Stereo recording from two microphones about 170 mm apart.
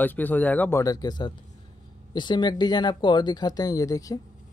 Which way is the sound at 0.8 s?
20° left (ahead or behind).